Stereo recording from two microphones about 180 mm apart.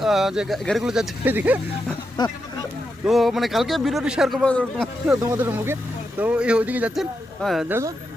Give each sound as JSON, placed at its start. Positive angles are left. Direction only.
{"t": 0.0, "sound": "a man's voice", "side_deg": 0}
{"t": 2.1, "sound": "a sound", "side_deg": 20}
{"t": 3.0, "sound": "a man's voice", "side_deg": 0}
{"t": 5.3, "sound": "a man's voice", "side_deg": -15}
{"t": 7.7, "sound": "speech", "side_deg": -15}